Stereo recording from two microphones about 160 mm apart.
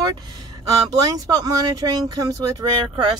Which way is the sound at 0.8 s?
25° right (ahead or behind).